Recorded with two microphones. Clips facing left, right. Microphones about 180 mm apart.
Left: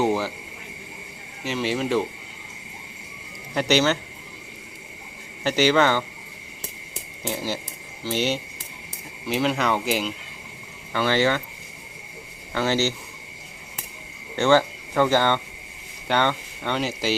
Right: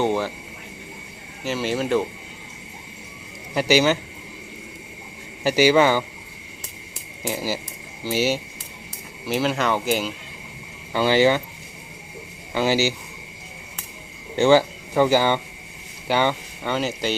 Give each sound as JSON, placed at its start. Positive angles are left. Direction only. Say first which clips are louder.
{"t": 0.0, "sound": "speech", "louder": "even", "side_deg": 5}
{"t": 1.5, "sound": "speech", "louder": "right 1 dB", "side_deg": 0}
{"t": 3.5, "sound": "a man's voice", "louder": "right 2 dB", "side_deg": -5}
{"t": 5.4, "sound": "a man's voice", "louder": "right 3 dB", "side_deg": -10}
{"t": 7.3, "sound": "a man's voice", "louder": "right 2 dB", "side_deg": -5}
{"t": 10.9, "sound": "a man's voice", "louder": "right 4 dB", "side_deg": -15}
{"t": 12.5, "sound": "a man's voice", "louder": "right 2 dB", "side_deg": -10}
{"t": 14.3, "sound": "speech", "louder": "right 3 dB", "side_deg": -10}